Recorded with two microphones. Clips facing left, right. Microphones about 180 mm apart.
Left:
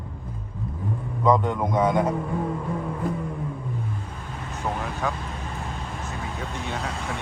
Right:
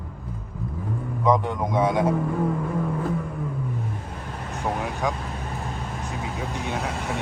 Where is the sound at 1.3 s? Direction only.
5° right (ahead or behind).